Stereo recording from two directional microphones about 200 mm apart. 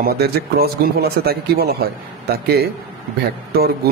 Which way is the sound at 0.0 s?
50° right (ahead or behind).